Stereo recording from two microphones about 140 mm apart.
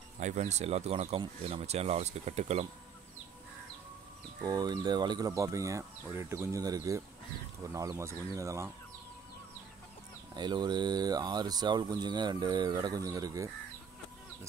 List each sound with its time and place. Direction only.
0.2 s speech: 60° right (ahead or behind)
4.4 s speech: 25° right (ahead or behind)
10.3 s speech: 30° right (ahead or behind)